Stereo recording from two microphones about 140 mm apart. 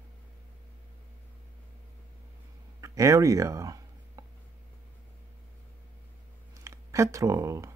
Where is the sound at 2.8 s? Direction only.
25° right (ahead or behind).